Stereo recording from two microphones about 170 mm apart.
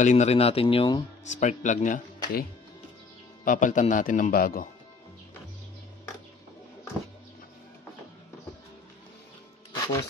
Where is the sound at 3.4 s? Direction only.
50° left (ahead or behind).